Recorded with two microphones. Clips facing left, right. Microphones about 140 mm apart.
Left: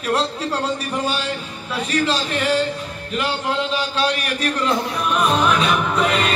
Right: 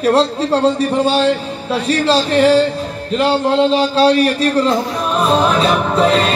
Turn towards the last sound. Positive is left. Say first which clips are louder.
# right 6 dB
turn(degrees=-30)  # may be behind; listen again after turning